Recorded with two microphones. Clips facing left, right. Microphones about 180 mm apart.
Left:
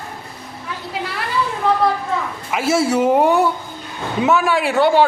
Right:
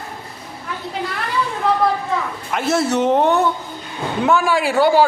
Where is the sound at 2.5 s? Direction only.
5° left (ahead or behind).